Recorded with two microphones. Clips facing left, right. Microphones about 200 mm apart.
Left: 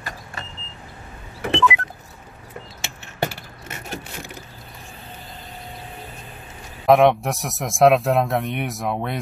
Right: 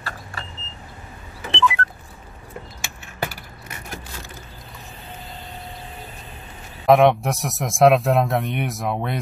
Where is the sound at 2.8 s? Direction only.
25° left (ahead or behind).